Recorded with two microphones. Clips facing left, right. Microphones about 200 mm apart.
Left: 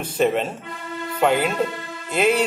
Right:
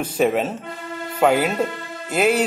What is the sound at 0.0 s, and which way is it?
Speech, 5° right (ahead or behind).